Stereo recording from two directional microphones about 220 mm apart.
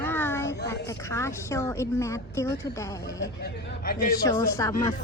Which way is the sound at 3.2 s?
50° left (ahead or behind).